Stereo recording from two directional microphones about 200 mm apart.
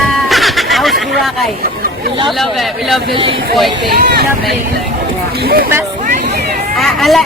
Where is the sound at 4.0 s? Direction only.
55° right (ahead or behind).